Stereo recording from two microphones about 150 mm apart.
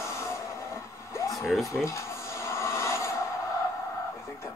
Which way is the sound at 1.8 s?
20° left (ahead or behind).